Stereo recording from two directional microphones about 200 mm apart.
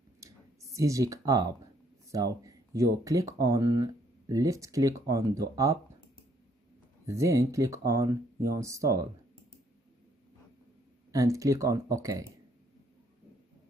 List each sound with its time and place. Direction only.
0.2 s a sound: 15° right (ahead or behind)
2.0 s speech: 15° right (ahead or behind)
7.1 s speech: 15° right (ahead or behind)
11.1 s speech: 15° right (ahead or behind)